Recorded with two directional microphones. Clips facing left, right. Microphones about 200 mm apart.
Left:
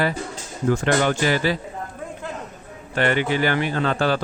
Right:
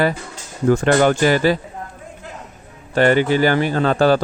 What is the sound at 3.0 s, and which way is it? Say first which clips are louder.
A man's voice: right 6 dB; 40° right (ahead or behind).